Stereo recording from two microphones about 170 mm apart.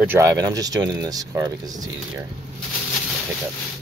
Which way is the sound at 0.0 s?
15° right (ahead or behind).